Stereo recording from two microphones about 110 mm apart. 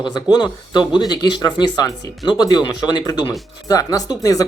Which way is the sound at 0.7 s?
40° left (ahead or behind).